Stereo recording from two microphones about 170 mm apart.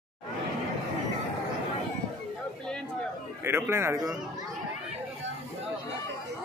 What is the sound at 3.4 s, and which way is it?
Speech, 15° right (ahead or behind).